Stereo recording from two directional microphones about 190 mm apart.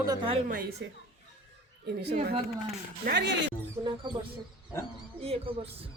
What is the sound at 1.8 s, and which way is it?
A woman's voice, 60° right (ahead or behind).